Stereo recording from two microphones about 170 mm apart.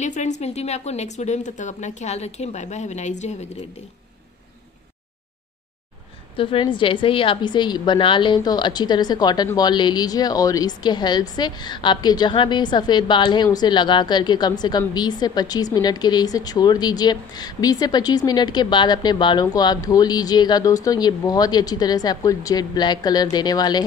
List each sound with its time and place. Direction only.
0.0 s a woman's voice: 45° left (ahead or behind)
6.3 s a woman's voice: 30° left (ahead or behind)